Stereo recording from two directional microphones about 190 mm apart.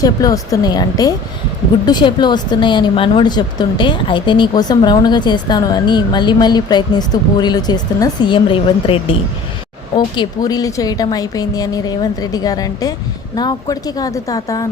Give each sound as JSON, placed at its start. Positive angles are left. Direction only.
{"t": 0.0, "sound": "a woman's voice", "side_deg": 20}
{"t": 10.2, "sound": "a woman's voice", "side_deg": 20}